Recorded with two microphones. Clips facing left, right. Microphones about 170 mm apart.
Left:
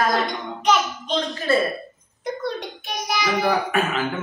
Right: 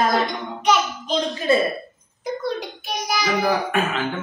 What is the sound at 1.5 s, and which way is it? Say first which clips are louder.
Speech: right 2 dB; 15° right (ahead or behind).